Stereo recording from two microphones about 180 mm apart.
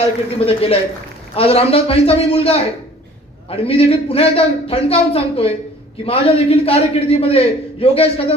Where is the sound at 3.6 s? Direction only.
30° left (ahead or behind).